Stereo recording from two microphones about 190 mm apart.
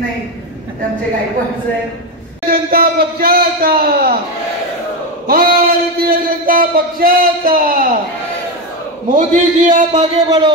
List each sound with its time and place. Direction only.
2.5 s a man's voice: 50° right (ahead or behind)
5.2 s speech: 50° right (ahead or behind)
9.1 s a man's voice: 45° right (ahead or behind)